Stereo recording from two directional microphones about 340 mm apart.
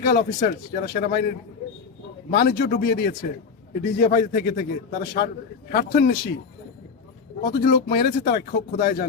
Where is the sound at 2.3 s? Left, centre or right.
Left.